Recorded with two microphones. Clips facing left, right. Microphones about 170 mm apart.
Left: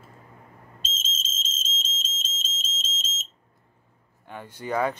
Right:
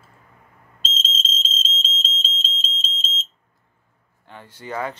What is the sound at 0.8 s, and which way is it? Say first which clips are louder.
Smoke detector: right 8 dB; 20° left (ahead or behind).